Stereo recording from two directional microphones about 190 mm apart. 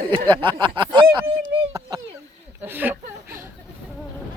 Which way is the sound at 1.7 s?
15° right (ahead or behind).